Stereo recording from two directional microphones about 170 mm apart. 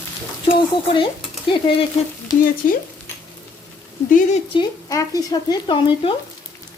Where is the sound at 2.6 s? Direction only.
50° left (ahead or behind).